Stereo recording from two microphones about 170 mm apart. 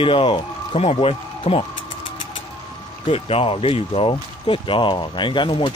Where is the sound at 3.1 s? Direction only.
35° left (ahead or behind).